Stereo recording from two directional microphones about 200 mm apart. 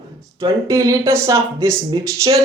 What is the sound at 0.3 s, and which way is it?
Speech, 15° right (ahead or behind).